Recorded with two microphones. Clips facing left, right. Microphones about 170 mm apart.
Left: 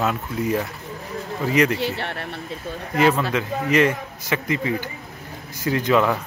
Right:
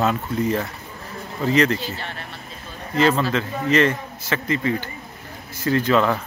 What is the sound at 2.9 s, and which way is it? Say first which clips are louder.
A man's voice: even; 10° left (ahead or behind).